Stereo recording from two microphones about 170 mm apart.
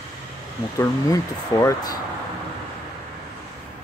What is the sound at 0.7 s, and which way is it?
Speech, 20° left (ahead or behind).